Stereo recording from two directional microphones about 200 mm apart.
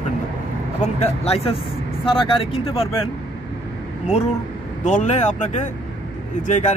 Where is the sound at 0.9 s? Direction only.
30° left (ahead or behind).